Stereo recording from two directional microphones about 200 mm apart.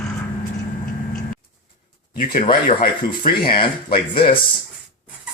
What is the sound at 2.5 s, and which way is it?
Speech, 45° left (ahead or behind).